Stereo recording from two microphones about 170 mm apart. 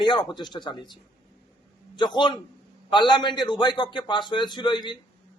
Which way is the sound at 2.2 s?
25° left (ahead or behind).